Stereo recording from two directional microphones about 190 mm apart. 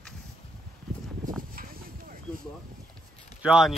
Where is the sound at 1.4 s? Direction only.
50° right (ahead or behind).